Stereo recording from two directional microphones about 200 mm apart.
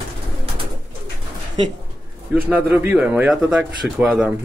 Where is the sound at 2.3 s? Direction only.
10° right (ahead or behind).